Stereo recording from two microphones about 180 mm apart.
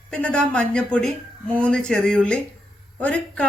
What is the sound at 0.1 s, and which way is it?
A woman's voice, 5° left (ahead or behind).